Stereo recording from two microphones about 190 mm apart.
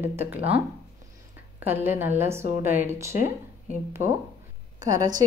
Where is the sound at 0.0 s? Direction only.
10° right (ahead or behind).